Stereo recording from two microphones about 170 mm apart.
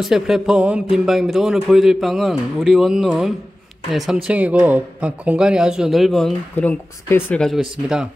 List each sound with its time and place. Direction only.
0.0 s a man's voice: centre (ahead or behind)